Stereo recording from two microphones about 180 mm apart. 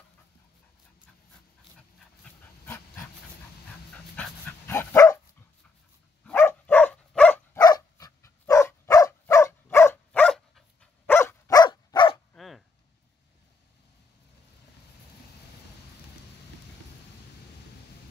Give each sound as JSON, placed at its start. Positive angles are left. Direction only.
{"t": 2.6, "sound": "dog", "side_deg": 15}
{"t": 4.2, "sound": "dog", "side_deg": 10}
{"t": 6.2, "sound": "a sound", "side_deg": 10}
{"t": 7.5, "sound": "dog", "side_deg": 20}
{"t": 12.4, "sound": "chop", "side_deg": 0}